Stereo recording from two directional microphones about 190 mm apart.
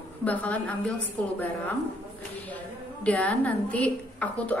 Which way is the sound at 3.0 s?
5° left (ahead or behind).